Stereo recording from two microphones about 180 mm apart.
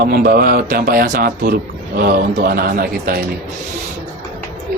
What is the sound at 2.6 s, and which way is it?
Speech, 55° right (ahead or behind).